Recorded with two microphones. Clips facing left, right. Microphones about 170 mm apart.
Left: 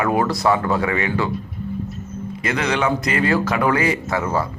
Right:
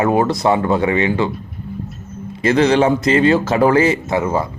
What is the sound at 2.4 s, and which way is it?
A man's voice, 30° right (ahead or behind).